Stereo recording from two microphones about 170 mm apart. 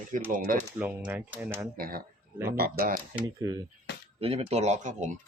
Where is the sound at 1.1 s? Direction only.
15° right (ahead or behind).